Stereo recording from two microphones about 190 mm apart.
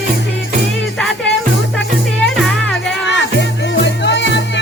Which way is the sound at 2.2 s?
5° left (ahead or behind).